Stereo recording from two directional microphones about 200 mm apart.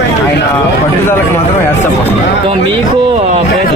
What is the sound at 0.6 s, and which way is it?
Speech, 10° left (ahead or behind).